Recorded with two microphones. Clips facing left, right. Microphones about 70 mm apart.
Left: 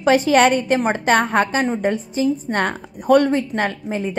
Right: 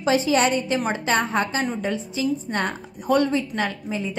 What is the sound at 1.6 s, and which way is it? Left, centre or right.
A woman's voice, left.